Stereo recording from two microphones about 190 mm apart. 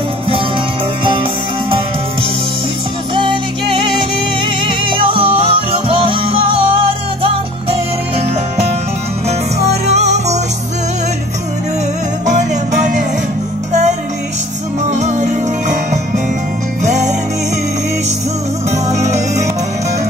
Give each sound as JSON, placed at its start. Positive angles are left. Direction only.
{"t": 3.2, "sound": "music", "side_deg": -25}
{"t": 9.9, "sound": "music", "side_deg": -35}
{"t": 12.3, "sound": "music", "side_deg": -40}
{"t": 14.9, "sound": "music", "side_deg": -40}
{"t": 16.8, "sound": "music", "side_deg": -40}
{"t": 18.9, "sound": "music", "side_deg": -35}